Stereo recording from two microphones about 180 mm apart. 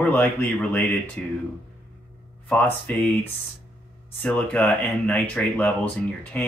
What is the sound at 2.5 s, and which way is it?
Speech, 10° left (ahead or behind).